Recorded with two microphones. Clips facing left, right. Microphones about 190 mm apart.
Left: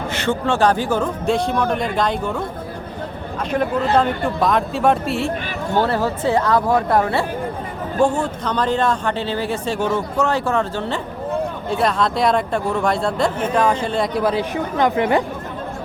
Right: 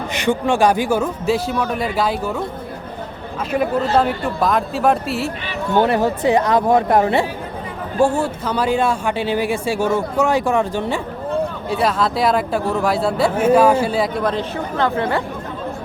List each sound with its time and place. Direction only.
0.1 s speech: 15° right (ahead or behind)
3.9 s speech: 5° right (ahead or behind)
5.7 s speech: 20° right (ahead or behind)
7.9 s speech: 10° right (ahead or behind)
11.7 s speech: 5° right (ahead or behind)
14.5 s speech: 15° left (ahead or behind)